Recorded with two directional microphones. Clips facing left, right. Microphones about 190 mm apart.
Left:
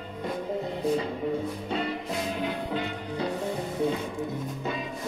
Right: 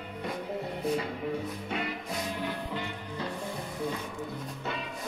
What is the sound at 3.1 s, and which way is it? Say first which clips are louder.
Music: left 7 dB; 30° left (ahead or behind).